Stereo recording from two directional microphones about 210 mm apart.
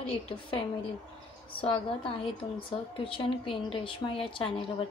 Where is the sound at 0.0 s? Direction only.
25° left (ahead or behind).